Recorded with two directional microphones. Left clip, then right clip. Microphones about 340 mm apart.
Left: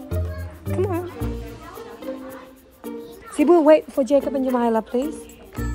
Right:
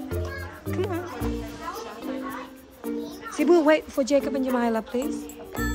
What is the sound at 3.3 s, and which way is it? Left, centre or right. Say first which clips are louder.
A woman's voice: left 5 dB; centre.